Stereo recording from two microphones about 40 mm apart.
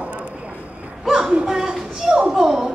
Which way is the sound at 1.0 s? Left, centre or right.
Centre.